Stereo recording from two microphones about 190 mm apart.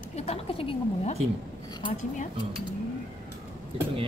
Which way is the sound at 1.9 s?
40° left (ahead or behind).